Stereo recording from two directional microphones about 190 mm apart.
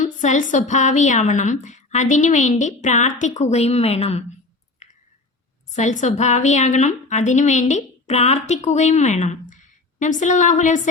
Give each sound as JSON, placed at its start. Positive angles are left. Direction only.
{"t": 0.0, "sound": "a woman's voice", "side_deg": 40}
{"t": 4.8, "sound": "a sound", "side_deg": 40}
{"t": 5.7, "sound": "a woman's voice", "side_deg": 40}